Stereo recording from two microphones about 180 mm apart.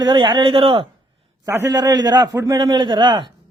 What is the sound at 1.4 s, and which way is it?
A man's voice, 15° right (ahead or behind).